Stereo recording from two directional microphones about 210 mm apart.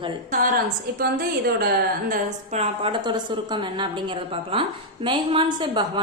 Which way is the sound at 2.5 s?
25° right (ahead or behind).